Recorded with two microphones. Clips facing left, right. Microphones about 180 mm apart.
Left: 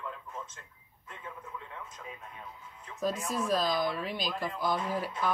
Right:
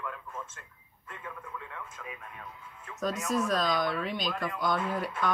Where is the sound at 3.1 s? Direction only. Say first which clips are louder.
Right 4 dB; 30° left (ahead or behind).